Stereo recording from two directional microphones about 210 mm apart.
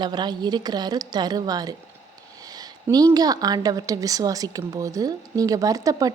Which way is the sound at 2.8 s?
15° right (ahead or behind).